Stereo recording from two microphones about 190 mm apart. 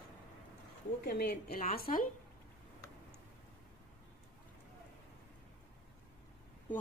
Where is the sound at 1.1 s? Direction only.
55° left (ahead or behind).